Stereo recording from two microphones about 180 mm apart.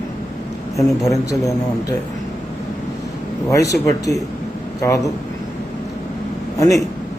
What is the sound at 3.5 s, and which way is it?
Speech, 20° left (ahead or behind).